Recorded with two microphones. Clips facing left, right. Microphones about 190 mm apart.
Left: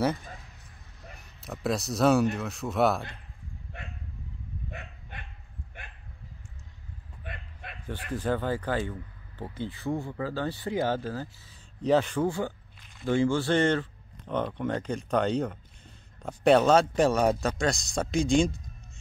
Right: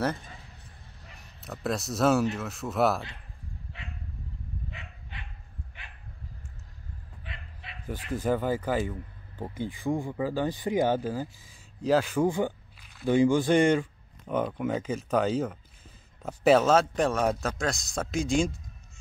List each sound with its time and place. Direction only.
1.4 s speech: centre (ahead or behind)
3.7 s dog: 50° left (ahead or behind)
7.3 s a sound: 50° left (ahead or behind)
7.6 s bow-wow: 50° left (ahead or behind)
8.1 s speech: 10° right (ahead or behind)
11.8 s speech: 5° right (ahead or behind)
12.3 s speech: 15° right (ahead or behind)